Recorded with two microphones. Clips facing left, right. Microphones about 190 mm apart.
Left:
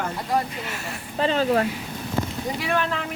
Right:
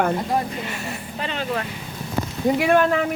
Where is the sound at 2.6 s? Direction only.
50° right (ahead or behind).